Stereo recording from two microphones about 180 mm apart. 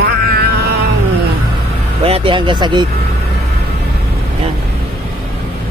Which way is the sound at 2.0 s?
30° right (ahead or behind).